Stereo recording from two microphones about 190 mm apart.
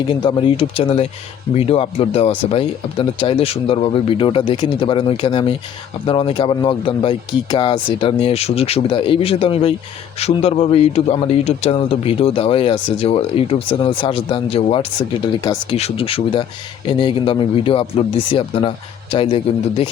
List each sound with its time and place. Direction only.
0.2 s a man's voice: 25° left (ahead or behind)